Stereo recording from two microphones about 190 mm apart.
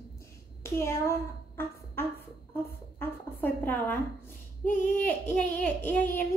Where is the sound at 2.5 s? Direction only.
10° left (ahead or behind).